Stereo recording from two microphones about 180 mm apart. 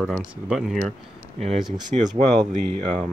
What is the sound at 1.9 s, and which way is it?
Speech, 35° right (ahead or behind).